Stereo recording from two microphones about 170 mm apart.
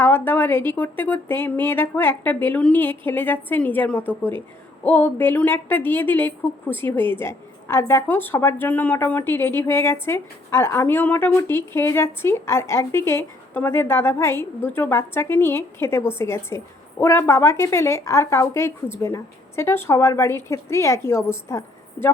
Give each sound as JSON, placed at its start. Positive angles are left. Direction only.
{"t": 0.0, "sound": "a woman's voice", "side_deg": 10}